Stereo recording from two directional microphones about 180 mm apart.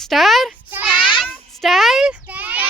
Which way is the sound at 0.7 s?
10° right (ahead or behind).